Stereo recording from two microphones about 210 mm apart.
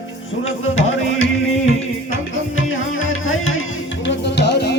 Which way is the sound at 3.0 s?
70° left (ahead or behind).